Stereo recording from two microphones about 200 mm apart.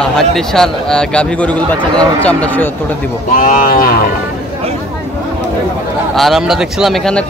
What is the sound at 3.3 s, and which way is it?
Cattle, 45° left (ahead or behind).